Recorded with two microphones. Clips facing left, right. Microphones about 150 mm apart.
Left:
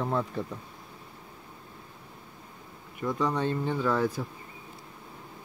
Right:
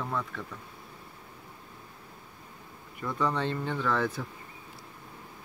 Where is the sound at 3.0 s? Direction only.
15° left (ahead or behind).